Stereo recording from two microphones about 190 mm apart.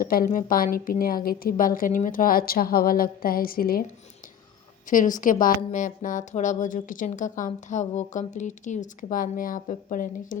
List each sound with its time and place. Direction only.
0.0 s a woman's voice: 50° left (ahead or behind)
4.9 s a woman's voice: 45° left (ahead or behind)